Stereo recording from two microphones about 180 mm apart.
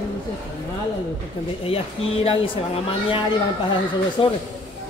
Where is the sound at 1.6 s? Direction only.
30° left (ahead or behind).